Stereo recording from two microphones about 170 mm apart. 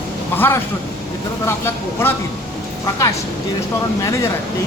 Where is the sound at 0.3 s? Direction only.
15° left (ahead or behind).